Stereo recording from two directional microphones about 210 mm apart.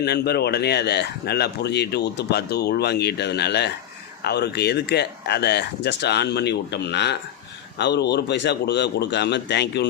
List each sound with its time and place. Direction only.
0.0 s speech: 50° left (ahead or behind)